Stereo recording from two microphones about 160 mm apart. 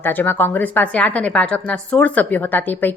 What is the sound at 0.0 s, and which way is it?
A woman's voice, 10° left (ahead or behind).